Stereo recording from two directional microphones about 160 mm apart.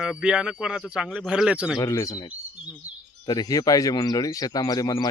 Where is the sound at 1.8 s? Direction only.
20° left (ahead or behind).